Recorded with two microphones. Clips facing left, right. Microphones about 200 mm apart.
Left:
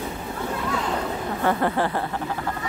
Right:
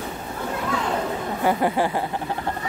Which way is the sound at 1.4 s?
15° right (ahead or behind).